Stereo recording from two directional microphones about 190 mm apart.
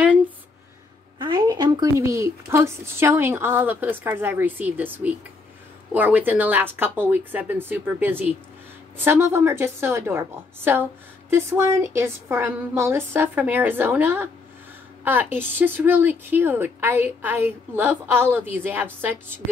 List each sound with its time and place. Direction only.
1.2 s a woman's voice: 20° right (ahead or behind)